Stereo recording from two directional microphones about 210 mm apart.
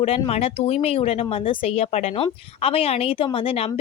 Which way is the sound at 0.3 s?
30° left (ahead or behind).